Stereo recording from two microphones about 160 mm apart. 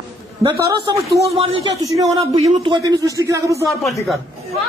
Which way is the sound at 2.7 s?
20° right (ahead or behind).